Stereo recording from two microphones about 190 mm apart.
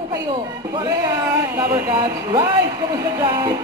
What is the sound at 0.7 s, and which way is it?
Speech, 20° right (ahead or behind).